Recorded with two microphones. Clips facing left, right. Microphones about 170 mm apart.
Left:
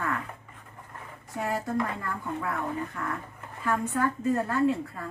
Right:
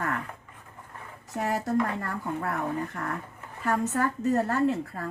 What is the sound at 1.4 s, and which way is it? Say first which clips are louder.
A woman's voice: right 2 dB; 40° right (ahead or behind).